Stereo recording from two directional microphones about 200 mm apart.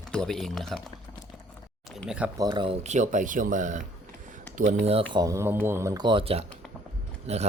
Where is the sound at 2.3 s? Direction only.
20° right (ahead or behind).